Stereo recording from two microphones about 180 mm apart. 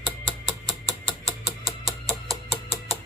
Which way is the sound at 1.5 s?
20° right (ahead or behind).